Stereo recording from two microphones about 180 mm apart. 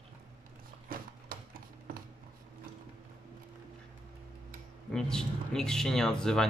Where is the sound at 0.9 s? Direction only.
55° right (ahead or behind).